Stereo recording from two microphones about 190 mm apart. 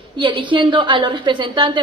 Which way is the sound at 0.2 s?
25° right (ahead or behind).